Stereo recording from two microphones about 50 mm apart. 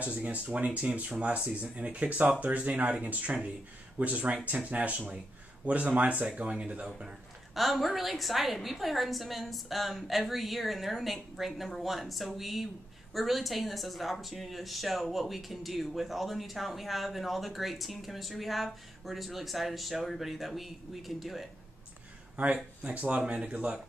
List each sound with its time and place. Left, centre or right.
0.0 s speech: right
7.5 s speech: centre
22.8 s speech: right